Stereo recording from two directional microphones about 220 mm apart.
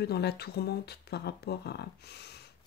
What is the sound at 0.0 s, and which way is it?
Speech, 45° left (ahead or behind).